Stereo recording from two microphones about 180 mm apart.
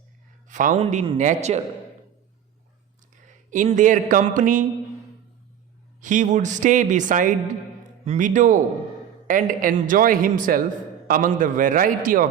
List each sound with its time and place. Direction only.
0.4 s a man's voice: 45° right (ahead or behind)
3.2 s speech: 45° right (ahead or behind)
6.0 s a man's voice: 45° right (ahead or behind)